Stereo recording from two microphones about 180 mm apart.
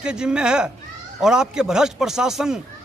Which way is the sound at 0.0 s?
5° right (ahead or behind).